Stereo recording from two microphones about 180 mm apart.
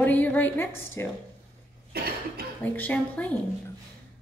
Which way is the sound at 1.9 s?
60° right (ahead or behind).